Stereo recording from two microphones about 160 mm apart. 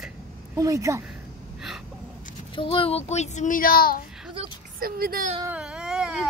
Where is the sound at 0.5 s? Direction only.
20° right (ahead or behind).